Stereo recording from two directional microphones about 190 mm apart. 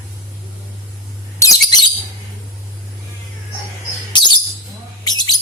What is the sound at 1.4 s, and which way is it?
Bird, 20° left (ahead or behind).